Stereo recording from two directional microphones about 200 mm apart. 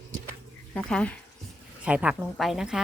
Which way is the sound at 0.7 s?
5° left (ahead or behind).